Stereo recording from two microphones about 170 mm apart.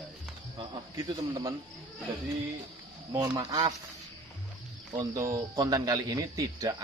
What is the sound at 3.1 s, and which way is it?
Speech, 20° right (ahead or behind).